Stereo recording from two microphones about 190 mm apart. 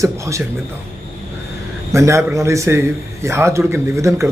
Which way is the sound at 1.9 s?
15° right (ahead or behind).